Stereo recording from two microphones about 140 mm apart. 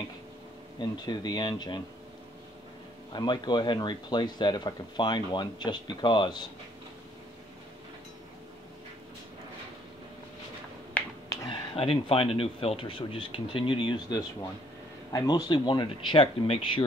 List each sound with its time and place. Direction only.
0.7 s speech: 30° left (ahead or behind)
3.1 s speech: 30° left (ahead or behind)
11.0 s finger snapping: 10° left (ahead or behind)
11.4 s speech: 40° left (ahead or behind)